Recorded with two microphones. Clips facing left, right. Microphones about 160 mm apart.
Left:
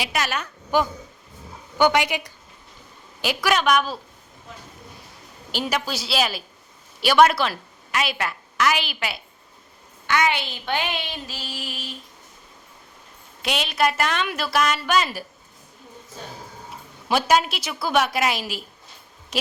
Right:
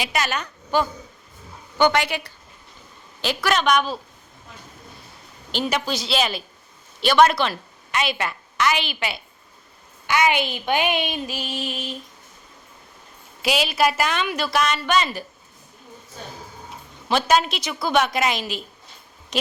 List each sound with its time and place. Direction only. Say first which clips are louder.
0.0 s a woman's voice: right 1 dB; 5° left (ahead or behind)
5.5 s a woman's voice: right 2 dB; 5° left (ahead or behind)
10.1 s a sound: right 2 dB; 15° right (ahead or behind)
13.4 s a woman's voice: right 2 dB; 5° right (ahead or behind)
17.1 s a woman's voice: even; 10° left (ahead or behind)